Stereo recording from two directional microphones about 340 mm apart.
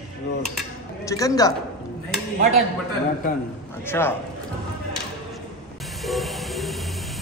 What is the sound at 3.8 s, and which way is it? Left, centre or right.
Speech, centre.